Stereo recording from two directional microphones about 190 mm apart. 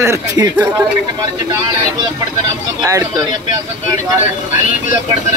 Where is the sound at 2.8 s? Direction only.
15° right (ahead or behind).